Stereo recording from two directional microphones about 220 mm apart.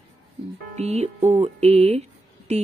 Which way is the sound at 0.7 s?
30° right (ahead or behind).